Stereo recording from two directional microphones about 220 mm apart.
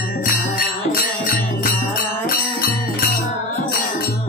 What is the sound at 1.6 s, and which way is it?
Music, 40° left (ahead or behind).